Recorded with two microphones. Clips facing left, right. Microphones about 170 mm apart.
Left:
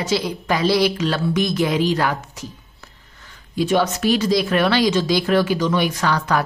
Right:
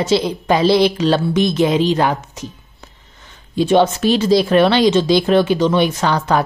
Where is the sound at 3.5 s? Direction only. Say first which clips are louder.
Right 5 dB; 25° right (ahead or behind).